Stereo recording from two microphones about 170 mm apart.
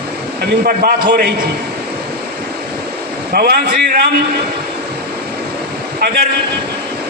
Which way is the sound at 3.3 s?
65° right (ahead or behind).